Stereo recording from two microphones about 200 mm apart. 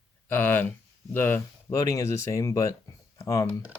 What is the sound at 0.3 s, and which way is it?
Speech, 10° left (ahead or behind).